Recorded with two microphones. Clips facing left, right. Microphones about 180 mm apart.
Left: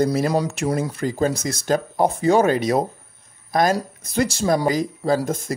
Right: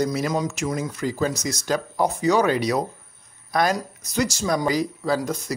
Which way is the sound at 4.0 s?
55° left (ahead or behind).